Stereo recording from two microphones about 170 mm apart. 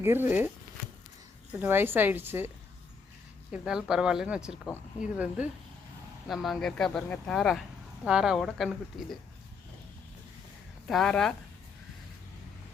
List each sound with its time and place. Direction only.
0.0 s a woman's voice: 10° right (ahead or behind)
1.6 s a woman's voice: 10° right (ahead or behind)
3.5 s a woman's voice: 5° right (ahead or behind)
10.8 s speech: centre (ahead or behind)